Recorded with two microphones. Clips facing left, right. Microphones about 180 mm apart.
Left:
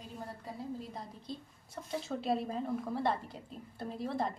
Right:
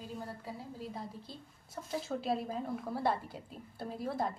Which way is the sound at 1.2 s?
Centre (ahead or behind).